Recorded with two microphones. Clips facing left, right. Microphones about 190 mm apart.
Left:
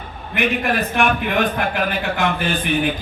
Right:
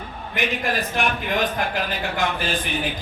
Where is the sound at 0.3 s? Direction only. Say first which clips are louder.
Left 5 dB; 60° left (ahead or behind).